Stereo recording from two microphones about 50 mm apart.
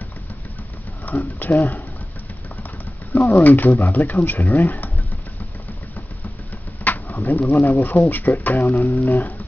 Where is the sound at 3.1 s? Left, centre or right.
Left.